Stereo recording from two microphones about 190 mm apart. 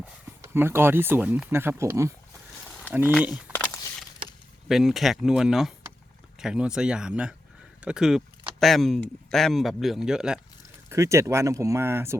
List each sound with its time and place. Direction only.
0.4 s speech: 10° right (ahead or behind)
3.5 s a sound: 5° left (ahead or behind)
4.7 s speech: centre (ahead or behind)
10.8 s speech: 15° right (ahead or behind)